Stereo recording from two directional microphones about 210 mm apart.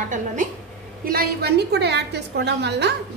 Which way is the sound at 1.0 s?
45° right (ahead or behind).